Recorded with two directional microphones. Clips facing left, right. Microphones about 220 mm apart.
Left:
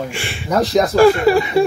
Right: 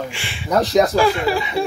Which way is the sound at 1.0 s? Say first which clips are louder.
Left 7 dB; 50° left (ahead or behind).